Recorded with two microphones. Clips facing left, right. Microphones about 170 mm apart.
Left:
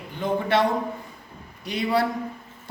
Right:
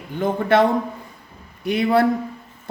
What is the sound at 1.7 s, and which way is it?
Speech, 55° right (ahead or behind).